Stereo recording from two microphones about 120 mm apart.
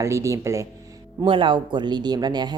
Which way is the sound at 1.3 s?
40° right (ahead or behind).